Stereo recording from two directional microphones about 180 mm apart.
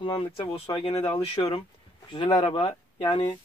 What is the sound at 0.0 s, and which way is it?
Speech, 30° left (ahead or behind).